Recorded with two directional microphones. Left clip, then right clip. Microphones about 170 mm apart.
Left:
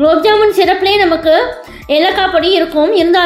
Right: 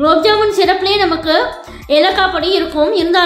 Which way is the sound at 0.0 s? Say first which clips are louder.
Left 2 dB; 15° left (ahead or behind).